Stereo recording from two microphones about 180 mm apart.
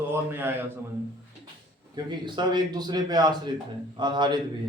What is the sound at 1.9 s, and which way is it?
A man's voice, 25° right (ahead or behind).